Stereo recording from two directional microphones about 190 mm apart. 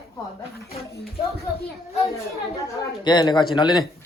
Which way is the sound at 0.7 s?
55° left (ahead or behind).